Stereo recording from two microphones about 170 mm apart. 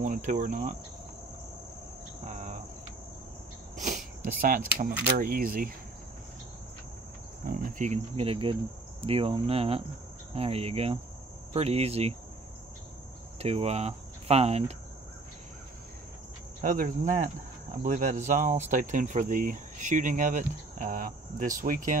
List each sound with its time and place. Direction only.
0.0 s cricket: 50° right (ahead or behind)
2.2 s cricket: 45° right (ahead or behind)
3.8 s speech: 50° right (ahead or behind)
7.4 s cricket: 50° right (ahead or behind)
13.4 s speech: 35° right (ahead or behind)
16.6 s cricket: 50° right (ahead or behind)
21.5 s speech: 55° right (ahead or behind)